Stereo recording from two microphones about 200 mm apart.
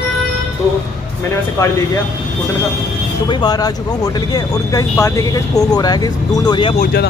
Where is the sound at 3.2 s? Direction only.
20° left (ahead or behind).